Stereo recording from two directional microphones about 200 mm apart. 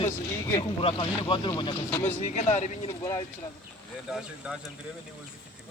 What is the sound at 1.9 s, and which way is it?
Speech, 10° left (ahead or behind).